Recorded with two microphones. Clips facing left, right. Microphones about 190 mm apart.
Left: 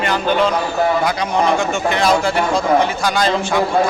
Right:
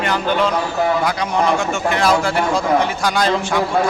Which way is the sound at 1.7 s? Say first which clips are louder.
Left 1 dB; 5° right (ahead or behind).